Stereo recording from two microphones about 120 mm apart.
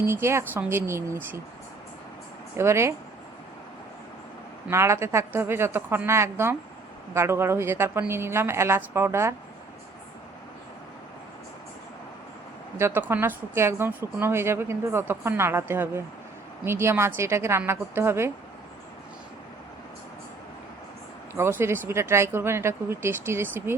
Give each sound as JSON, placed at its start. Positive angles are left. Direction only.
{"t": 0.0, "sound": "a woman's voice", "side_deg": -20}
{"t": 2.6, "sound": "a woman's voice", "side_deg": -20}
{"t": 4.7, "sound": "a woman's voice", "side_deg": -20}
{"t": 12.8, "sound": "a woman's voice", "side_deg": -15}
{"t": 21.3, "sound": "a woman's voice", "side_deg": -20}